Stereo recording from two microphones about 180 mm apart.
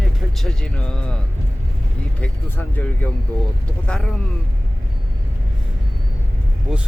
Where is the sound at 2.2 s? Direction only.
10° left (ahead or behind).